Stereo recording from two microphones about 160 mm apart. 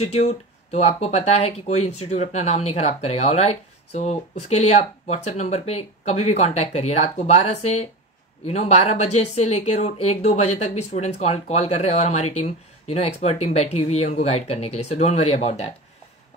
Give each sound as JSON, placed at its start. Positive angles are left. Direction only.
{"t": 0.0, "sound": "speech", "side_deg": 45}